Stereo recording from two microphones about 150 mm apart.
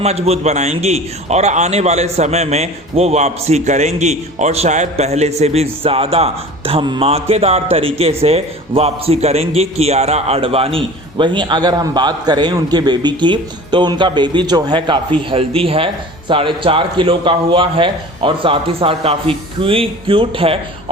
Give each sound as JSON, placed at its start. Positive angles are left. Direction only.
{"t": 0.0, "sound": "a man's voice", "side_deg": -45}